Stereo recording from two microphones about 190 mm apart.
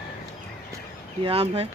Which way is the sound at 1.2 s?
30° right (ahead or behind).